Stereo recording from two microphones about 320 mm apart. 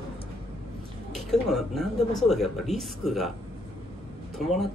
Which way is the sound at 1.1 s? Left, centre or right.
Centre.